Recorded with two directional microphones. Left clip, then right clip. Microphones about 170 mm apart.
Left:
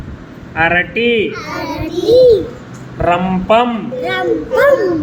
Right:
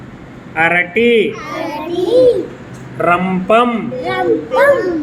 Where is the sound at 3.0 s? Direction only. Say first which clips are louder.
Right 1 dB; 20° right (ahead or behind).